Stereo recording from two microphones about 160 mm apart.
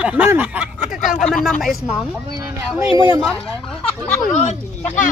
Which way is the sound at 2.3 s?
25° right (ahead or behind).